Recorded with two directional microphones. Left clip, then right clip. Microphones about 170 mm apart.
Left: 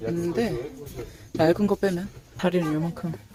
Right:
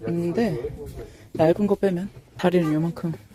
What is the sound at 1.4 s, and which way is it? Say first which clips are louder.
Speech: right 2 dB; 5° right (ahead or behind).